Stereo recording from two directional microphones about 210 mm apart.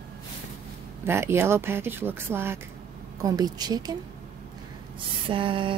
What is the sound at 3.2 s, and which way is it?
Mantra, 20° right (ahead or behind).